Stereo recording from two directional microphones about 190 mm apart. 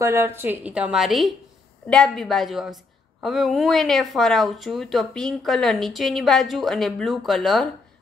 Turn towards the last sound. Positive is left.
turn(degrees=0)  # may be behind; listen again after turning